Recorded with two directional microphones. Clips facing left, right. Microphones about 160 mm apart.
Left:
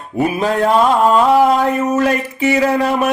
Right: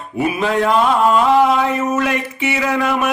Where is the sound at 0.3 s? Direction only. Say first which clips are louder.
Left 1 dB; 40° left (ahead or behind).